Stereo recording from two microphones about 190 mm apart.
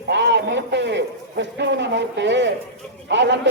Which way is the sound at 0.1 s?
65° right (ahead or behind).